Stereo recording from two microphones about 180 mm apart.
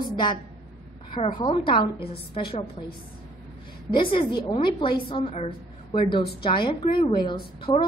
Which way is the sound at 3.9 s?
30° left (ahead or behind).